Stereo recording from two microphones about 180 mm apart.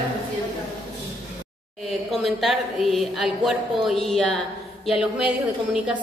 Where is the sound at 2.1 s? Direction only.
Centre (ahead or behind).